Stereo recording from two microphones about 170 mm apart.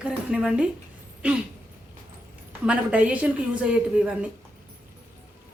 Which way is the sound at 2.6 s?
5° right (ahead or behind).